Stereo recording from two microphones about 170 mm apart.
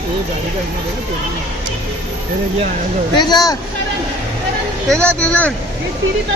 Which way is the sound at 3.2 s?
25° left (ahead or behind).